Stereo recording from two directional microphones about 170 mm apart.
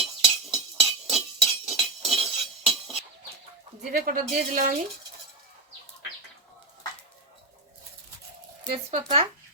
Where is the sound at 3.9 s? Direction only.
55° right (ahead or behind).